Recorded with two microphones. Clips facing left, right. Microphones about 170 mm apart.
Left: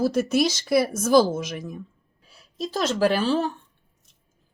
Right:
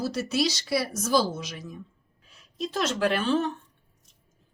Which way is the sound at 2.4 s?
35° left (ahead or behind).